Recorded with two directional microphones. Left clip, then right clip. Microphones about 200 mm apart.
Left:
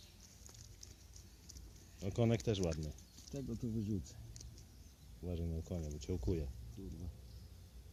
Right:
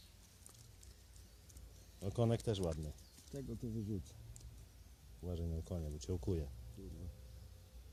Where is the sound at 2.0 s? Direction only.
15° right (ahead or behind).